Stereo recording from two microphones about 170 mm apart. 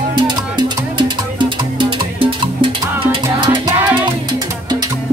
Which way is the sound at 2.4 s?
30° right (ahead or behind).